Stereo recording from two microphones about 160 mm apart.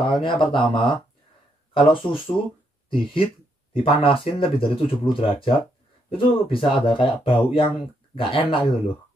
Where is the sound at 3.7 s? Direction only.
35° left (ahead or behind).